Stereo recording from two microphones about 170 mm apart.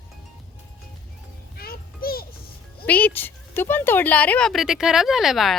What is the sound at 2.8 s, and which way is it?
A woman's voice, 10° left (ahead or behind).